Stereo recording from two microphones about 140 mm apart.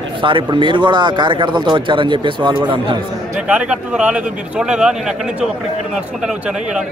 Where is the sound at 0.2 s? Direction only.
35° right (ahead or behind).